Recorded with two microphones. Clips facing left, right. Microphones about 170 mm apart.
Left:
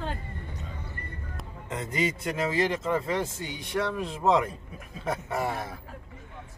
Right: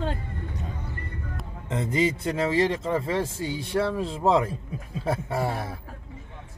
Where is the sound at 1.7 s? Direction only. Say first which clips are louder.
Right 5 dB; 25° right (ahead or behind).